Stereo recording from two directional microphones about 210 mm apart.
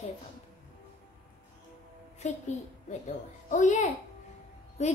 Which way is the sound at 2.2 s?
35° left (ahead or behind).